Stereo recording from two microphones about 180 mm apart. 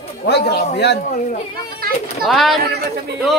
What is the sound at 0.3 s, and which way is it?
Speech, 70° left (ahead or behind).